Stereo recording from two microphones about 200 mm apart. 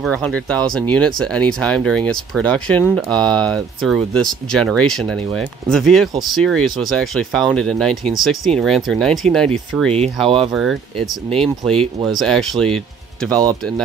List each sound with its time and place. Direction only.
0.0 s speech: centre (ahead or behind)
10.2 s speech: 30° right (ahead or behind)
10.5 s speech: centre (ahead or behind)